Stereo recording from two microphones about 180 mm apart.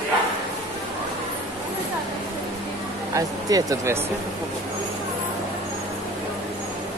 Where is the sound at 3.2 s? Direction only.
20° right (ahead or behind).